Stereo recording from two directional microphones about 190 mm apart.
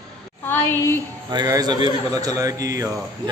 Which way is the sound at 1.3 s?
20° right (ahead or behind).